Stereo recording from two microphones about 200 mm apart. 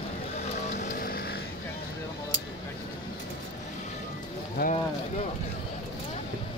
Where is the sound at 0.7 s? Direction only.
40° left (ahead or behind).